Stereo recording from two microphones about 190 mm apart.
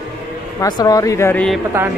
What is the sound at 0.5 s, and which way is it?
Speech, 20° left (ahead or behind).